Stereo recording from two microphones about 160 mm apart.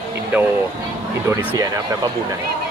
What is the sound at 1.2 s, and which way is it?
Speech, 20° right (ahead or behind).